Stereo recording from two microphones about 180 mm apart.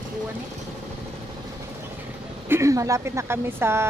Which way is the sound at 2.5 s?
15° right (ahead or behind).